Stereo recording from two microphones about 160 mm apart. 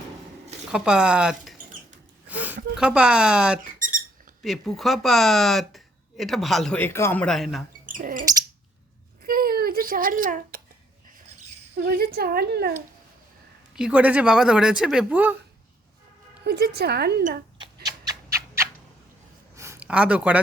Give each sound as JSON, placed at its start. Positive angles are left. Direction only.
{"t": 0.7, "sound": "speech", "side_deg": -5}
{"t": 2.2, "sound": "a sound", "side_deg": -10}
{"t": 2.7, "sound": "speech", "side_deg": -5}
{"t": 7.9, "sound": "bird", "side_deg": -55}
{"t": 9.2, "sound": "a sound", "side_deg": -70}
{"t": 11.8, "sound": "a woman's voice", "side_deg": -75}
{"t": 13.7, "sound": "speech", "side_deg": -5}
{"t": 16.4, "sound": "a woman's voice", "side_deg": -90}
{"t": 17.8, "sound": "a sound", "side_deg": -20}